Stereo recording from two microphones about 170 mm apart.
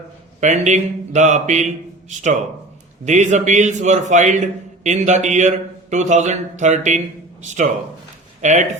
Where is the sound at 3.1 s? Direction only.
45° right (ahead or behind).